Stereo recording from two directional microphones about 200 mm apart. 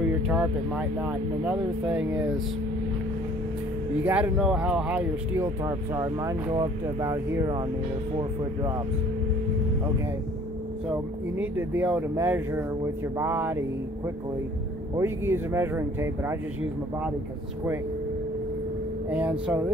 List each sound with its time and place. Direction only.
0.0 s speech: 5° right (ahead or behind)
4.0 s speech: 5° right (ahead or behind)
10.9 s speech: 10° right (ahead or behind)
13.2 s a sound: 10° right (ahead or behind)
15.0 s speech: 10° right (ahead or behind)
19.0 s speech: 5° right (ahead or behind)